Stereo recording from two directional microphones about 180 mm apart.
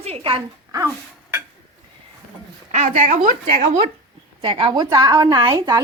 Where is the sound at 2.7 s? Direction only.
40° right (ahead or behind).